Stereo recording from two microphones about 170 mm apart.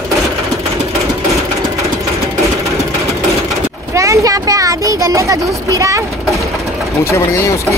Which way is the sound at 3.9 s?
20° right (ahead or behind).